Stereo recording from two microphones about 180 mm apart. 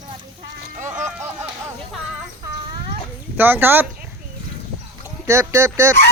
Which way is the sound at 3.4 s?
10° right (ahead or behind).